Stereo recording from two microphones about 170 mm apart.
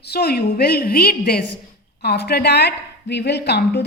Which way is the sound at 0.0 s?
70° left (ahead or behind).